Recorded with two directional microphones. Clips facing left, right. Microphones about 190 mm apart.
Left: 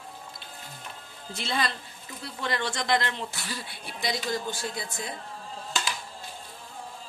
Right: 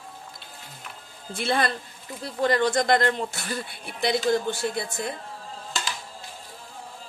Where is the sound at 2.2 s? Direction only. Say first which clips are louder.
Right 9 dB; 40° right (ahead or behind); by 5.1 s 60° right (ahead or behind).